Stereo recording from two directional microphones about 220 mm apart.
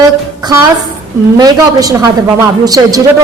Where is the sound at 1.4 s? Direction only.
15° right (ahead or behind).